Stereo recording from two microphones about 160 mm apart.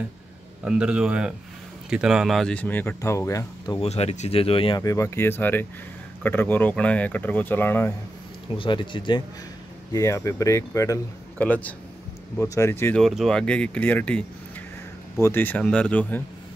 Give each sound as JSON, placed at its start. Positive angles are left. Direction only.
{"t": 0.7, "sound": "a man's voice", "side_deg": -5}
{"t": 3.8, "sound": "speech", "side_deg": 40}
{"t": 8.5, "sound": "speech", "side_deg": 30}
{"t": 9.9, "sound": "speech", "side_deg": 20}
{"t": 12.9, "sound": "speech", "side_deg": 0}